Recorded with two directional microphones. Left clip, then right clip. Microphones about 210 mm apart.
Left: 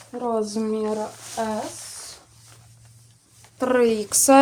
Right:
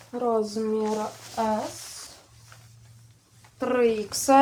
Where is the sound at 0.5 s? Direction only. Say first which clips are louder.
Left 1 dB; 45° left (ahead or behind).